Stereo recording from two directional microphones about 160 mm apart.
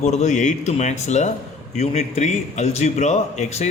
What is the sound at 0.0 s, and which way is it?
A man's voice, 45° left (ahead or behind).